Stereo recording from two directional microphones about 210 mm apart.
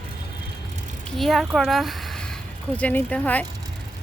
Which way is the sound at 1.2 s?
Centre (ahead or behind).